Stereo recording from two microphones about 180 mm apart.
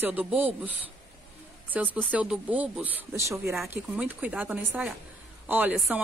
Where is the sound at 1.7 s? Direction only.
10° right (ahead or behind).